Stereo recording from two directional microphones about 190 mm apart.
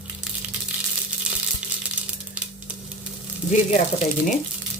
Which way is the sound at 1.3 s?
5° right (ahead or behind).